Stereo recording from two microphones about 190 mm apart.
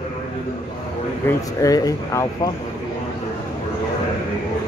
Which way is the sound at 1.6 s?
20° left (ahead or behind).